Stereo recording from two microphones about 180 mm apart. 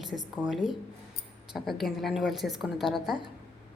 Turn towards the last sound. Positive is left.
turn(degrees=0)  # may be behind; listen again after turning